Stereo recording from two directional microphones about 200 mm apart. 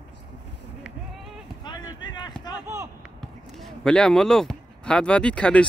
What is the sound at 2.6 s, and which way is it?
Speech, 15° right (ahead or behind).